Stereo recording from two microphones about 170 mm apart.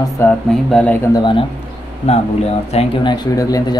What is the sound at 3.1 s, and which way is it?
Speech, 20° left (ahead or behind).